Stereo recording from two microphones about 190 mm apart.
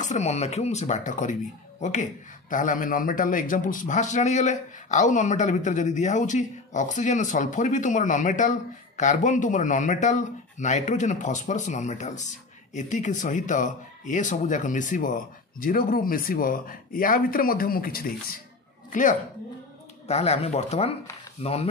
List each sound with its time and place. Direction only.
0.0 s a man's voice: 35° left (ahead or behind)
20.1 s a man's voice: 35° left (ahead or behind)